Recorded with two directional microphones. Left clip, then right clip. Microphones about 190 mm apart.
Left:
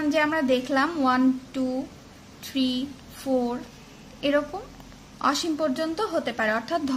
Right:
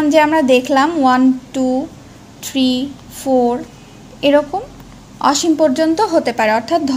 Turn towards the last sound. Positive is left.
turn(degrees=-10)  # may be behind; listen again after turning